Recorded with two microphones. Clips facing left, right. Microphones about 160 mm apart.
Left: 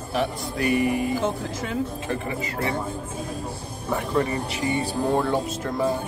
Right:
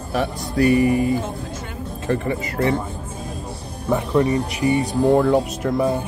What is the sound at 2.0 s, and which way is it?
Speech, 40° right (ahead or behind).